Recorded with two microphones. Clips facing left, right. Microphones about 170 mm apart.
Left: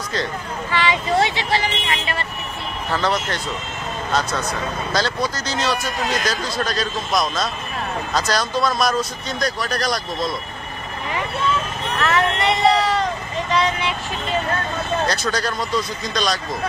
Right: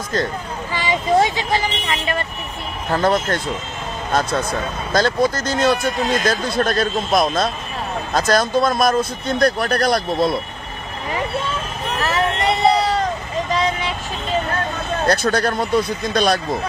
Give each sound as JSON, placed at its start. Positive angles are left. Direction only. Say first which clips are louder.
{"t": 0.7, "sound": "speech", "louder": "right 2 dB", "side_deg": -45}
{"t": 2.9, "sound": "speech", "louder": "right 5 dB", "side_deg": -50}
{"t": 5.9, "sound": "speech", "louder": "right 4 dB", "side_deg": -25}
{"t": 6.2, "sound": "speech", "louder": "right 5 dB", "side_deg": -55}
{"t": 12.0, "sound": "vehicle", "louder": "even", "side_deg": -35}
{"t": 15.0, "sound": "speech", "louder": "right 5 dB", "side_deg": -55}